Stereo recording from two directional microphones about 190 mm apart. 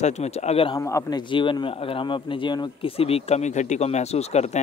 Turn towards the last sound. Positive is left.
turn(degrees=35)  # may be behind; listen again after turning